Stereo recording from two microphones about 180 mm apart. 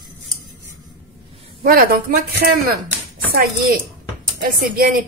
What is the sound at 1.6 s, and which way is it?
A woman's voice, 55° right (ahead or behind).